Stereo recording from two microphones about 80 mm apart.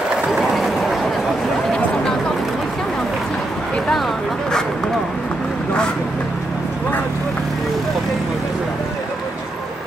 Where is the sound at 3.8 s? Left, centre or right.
Centre.